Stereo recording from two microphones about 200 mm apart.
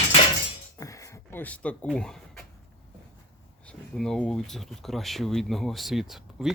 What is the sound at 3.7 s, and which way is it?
Speech, 5° left (ahead or behind).